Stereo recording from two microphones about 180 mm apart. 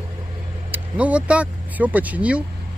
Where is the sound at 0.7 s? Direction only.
10° right (ahead or behind).